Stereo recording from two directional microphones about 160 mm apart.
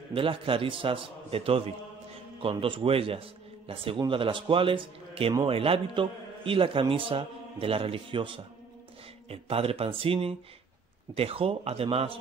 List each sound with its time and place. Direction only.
0.1 s a man's voice: 35° right (ahead or behind)